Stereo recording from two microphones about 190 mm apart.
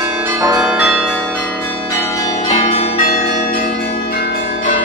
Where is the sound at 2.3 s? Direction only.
35° left (ahead or behind).